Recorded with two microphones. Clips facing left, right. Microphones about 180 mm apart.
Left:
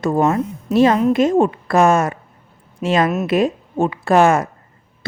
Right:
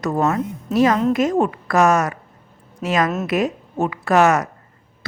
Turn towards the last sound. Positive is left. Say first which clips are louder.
# left 2 dB
turn(degrees=30)  # may be behind; listen again after turning